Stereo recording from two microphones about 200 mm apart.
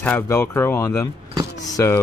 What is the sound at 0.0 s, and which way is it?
Speech, 10° left (ahead or behind).